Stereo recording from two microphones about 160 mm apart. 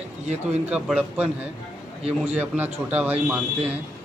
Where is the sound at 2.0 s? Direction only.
35° right (ahead or behind).